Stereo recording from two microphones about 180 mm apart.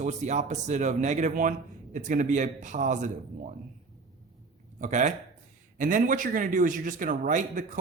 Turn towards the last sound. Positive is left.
turn(degrees=-50)  # may be behind; listen again after turning